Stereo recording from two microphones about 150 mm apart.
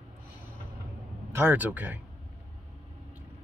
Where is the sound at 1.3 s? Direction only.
15° right (ahead or behind).